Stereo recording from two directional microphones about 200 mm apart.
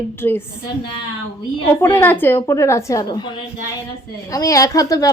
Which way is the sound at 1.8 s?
10° left (ahead or behind).